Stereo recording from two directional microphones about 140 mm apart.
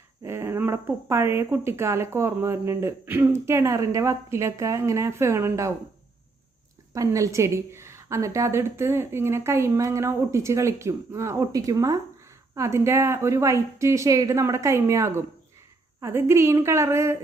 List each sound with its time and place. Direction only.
0.3 s speech: 20° right (ahead or behind)
6.9 s speech: 25° right (ahead or behind)